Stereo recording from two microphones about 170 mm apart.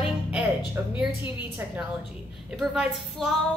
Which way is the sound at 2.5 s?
5° right (ahead or behind).